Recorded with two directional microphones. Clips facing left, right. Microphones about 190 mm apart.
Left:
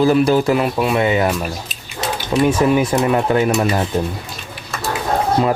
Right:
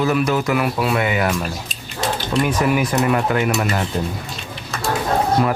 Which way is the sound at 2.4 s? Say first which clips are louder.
Left 5 dB; 30° left (ahead or behind).